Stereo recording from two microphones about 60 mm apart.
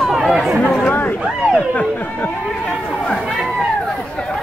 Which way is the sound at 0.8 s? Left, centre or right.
Left.